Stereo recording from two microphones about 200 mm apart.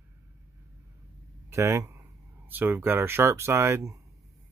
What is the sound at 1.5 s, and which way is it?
Speech, 15° right (ahead or behind).